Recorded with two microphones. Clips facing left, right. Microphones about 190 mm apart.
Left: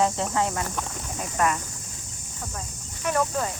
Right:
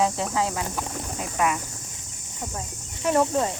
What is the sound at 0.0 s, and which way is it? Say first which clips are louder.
Speech: even; 5° right (ahead or behind).